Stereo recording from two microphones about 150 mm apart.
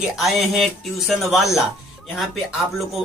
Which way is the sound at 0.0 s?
Centre (ahead or behind).